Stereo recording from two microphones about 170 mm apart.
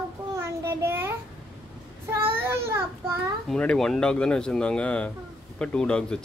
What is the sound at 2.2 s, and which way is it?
Child singing, 15° right (ahead or behind).